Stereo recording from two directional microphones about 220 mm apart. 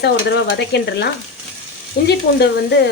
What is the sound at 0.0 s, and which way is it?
Speech, 50° left (ahead or behind).